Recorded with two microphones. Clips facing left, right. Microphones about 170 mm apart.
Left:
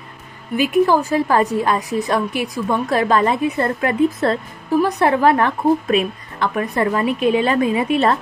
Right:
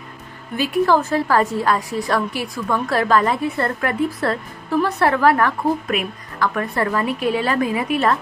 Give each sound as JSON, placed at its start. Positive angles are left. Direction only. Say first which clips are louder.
{"t": 0.6, "sound": "a woman's voice", "louder": "left 2 dB", "side_deg": 15}